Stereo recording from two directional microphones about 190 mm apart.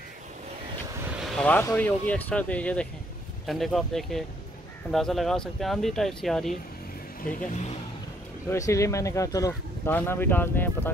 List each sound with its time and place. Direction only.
1.3 s speech: 5° left (ahead or behind)
7.3 s speech: 40° left (ahead or behind)
8.5 s speech: 15° left (ahead or behind)